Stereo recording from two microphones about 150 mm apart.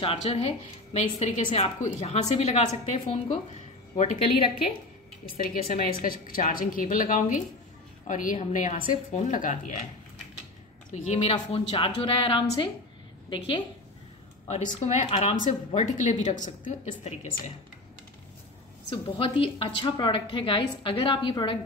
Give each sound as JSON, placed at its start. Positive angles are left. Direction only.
{"t": 0.0, "sound": "speech", "side_deg": 40}
{"t": 5.2, "sound": "a woman's voice", "side_deg": 70}
{"t": 5.6, "sound": "speech", "side_deg": 45}
{"t": 6.0, "sound": "a woman's voice", "side_deg": 75}
{"t": 11.0, "sound": "speech", "side_deg": 50}
{"t": 11.3, "sound": "a woman's voice", "side_deg": 35}
{"t": 14.5, "sound": "speech", "side_deg": 50}
{"t": 18.9, "sound": "a woman's voice", "side_deg": 35}